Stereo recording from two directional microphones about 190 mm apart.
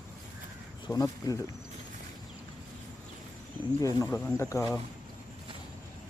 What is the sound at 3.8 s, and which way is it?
Speech, 15° left (ahead or behind).